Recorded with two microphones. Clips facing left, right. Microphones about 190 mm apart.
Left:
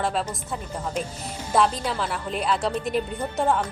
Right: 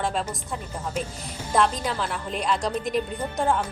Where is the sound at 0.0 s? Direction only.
Centre (ahead or behind).